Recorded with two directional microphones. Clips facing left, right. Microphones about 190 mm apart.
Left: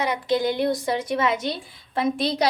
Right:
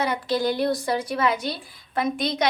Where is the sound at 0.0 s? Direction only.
20° left (ahead or behind).